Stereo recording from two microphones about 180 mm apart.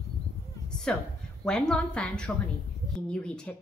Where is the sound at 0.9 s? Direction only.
5° left (ahead or behind).